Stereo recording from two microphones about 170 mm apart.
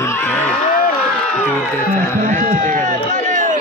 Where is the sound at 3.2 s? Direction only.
50° right (ahead or behind).